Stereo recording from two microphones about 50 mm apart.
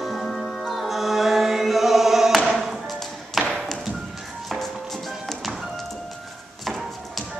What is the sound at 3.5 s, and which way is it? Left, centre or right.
Tap, centre.